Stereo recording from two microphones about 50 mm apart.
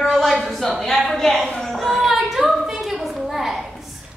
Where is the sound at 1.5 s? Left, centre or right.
Centre.